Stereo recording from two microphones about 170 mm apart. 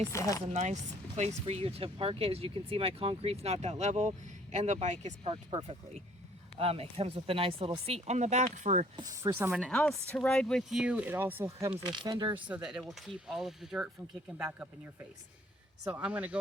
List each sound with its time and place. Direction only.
0.1 s speech: 20° left (ahead or behind)
0.5 s speech: 45° right (ahead or behind)
5.3 s speech: 30° right (ahead or behind)
9.0 s speech: 20° right (ahead or behind)
9.5 s speech: centre (ahead or behind)
11.9 s speech: 25° right (ahead or behind)
12.6 s speech: 5° right (ahead or behind)
16.0 s speech: 10° right (ahead or behind)